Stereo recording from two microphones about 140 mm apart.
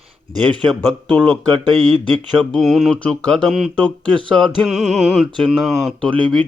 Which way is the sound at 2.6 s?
Centre (ahead or behind).